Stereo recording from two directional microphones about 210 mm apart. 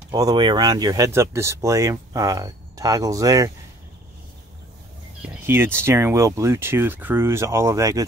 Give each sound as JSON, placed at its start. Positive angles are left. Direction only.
{"t": 0.1, "sound": "speech", "side_deg": -20}
{"t": 5.2, "sound": "speech", "side_deg": -10}